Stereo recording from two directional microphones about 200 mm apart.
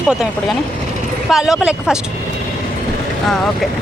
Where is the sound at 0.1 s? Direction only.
Centre (ahead or behind).